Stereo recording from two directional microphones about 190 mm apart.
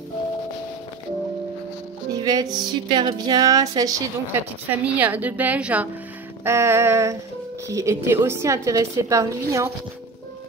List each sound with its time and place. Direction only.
2.2 s a woman's voice: 20° right (ahead or behind)